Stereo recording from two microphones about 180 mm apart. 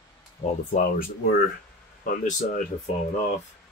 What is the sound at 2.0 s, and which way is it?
Speech, 45° left (ahead or behind).